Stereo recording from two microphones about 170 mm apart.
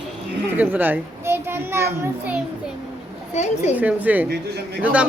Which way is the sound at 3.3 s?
40° left (ahead or behind).